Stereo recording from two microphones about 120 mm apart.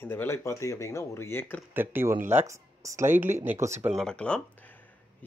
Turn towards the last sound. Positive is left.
turn(degrees=10)  # may be behind; listen again after turning